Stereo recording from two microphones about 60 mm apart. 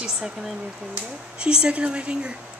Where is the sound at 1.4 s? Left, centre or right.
Centre.